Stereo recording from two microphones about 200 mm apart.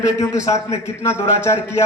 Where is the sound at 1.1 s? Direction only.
30° left (ahead or behind).